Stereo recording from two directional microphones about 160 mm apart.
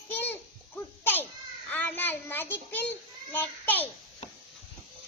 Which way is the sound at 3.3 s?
10° left (ahead or behind).